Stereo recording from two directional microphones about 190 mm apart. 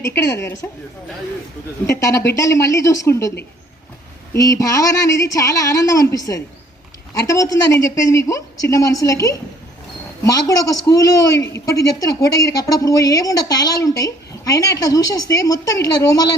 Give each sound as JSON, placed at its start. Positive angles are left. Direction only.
{"t": 0.0, "sound": "a woman's voice", "side_deg": 15}
{"t": 1.9, "sound": "a woman's voice", "side_deg": 15}
{"t": 4.4, "sound": "a woman's voice", "side_deg": 15}